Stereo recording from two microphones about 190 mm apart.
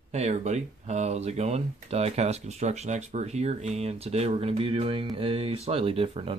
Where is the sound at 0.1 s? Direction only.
35° right (ahead or behind).